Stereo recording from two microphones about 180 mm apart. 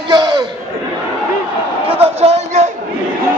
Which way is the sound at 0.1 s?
20° right (ahead or behind).